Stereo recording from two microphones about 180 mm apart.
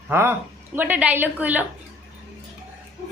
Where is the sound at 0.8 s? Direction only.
10° right (ahead or behind).